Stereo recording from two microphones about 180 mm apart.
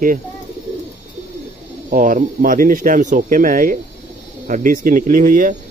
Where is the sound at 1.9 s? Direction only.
50° right (ahead or behind).